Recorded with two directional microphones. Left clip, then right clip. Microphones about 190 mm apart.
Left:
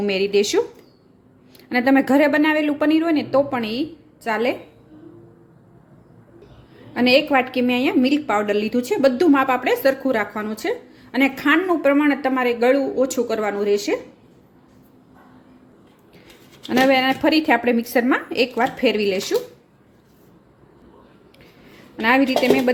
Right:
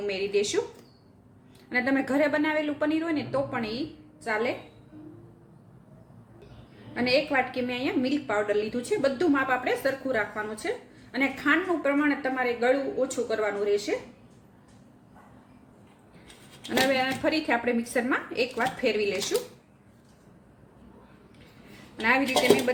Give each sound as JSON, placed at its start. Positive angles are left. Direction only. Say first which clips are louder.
{"t": 0.0, "sound": "a woman's voice", "louder": "left 8 dB", "side_deg": 50}
{"t": 1.7, "sound": "a woman's voice", "louder": "left 9 dB", "side_deg": 45}
{"t": 6.9, "sound": "a woman's voice", "louder": "left 8 dB", "side_deg": 50}
{"t": 16.6, "sound": "a woman's voice", "louder": "left 8 dB", "side_deg": 45}